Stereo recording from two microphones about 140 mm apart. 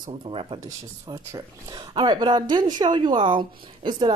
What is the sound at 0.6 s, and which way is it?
Speech, 25° right (ahead or behind).